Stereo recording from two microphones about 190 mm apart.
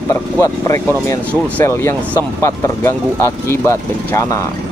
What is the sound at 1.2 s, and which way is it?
Speech, 10° right (ahead or behind).